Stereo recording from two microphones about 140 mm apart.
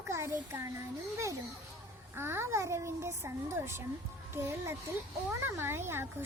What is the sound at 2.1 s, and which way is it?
A child's voice, 15° right (ahead or behind).